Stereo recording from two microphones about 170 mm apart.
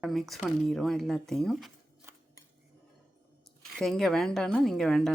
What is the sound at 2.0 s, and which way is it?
Scissors, 15° right (ahead or behind).